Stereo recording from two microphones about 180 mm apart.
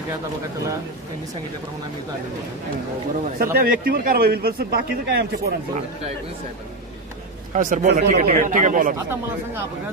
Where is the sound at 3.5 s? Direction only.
55° right (ahead or behind).